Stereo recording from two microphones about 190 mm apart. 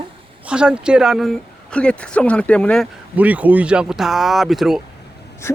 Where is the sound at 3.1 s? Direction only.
10° right (ahead or behind).